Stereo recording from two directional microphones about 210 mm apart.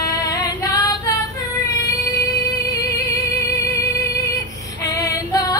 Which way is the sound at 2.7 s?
15° left (ahead or behind).